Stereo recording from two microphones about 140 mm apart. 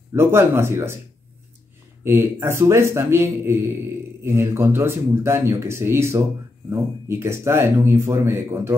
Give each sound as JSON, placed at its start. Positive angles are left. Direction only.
{"t": 0.1, "sound": "speech", "side_deg": -20}
{"t": 2.0, "sound": "a man's voice", "side_deg": -15}